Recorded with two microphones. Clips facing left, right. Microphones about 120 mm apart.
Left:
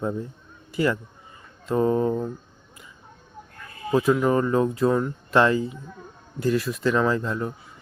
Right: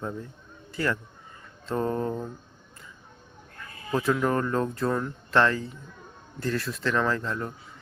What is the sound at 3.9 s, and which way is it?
Speech, 10° left (ahead or behind).